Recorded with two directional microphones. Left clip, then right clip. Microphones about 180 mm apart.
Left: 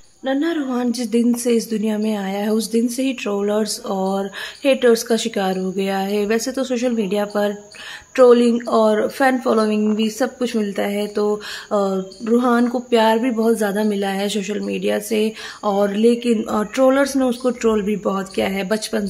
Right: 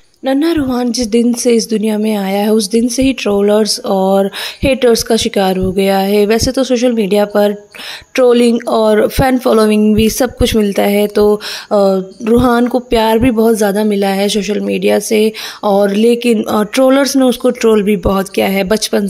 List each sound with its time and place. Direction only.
0.2 s speech: 35° right (ahead or behind)